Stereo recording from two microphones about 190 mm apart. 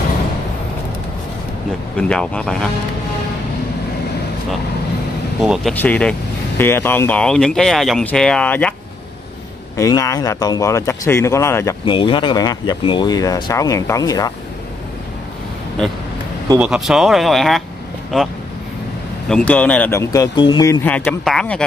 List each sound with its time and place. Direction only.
2.0 s speech: 5° left (ahead or behind)
5.4 s speech: centre (ahead or behind)
9.8 s speech: 15° left (ahead or behind)
11.8 s speech: 25° left (ahead or behind)
16.5 s speech: 5° right (ahead or behind); by 20.8 s 20° left (ahead or behind)
20.8 s speech: 10° left (ahead or behind)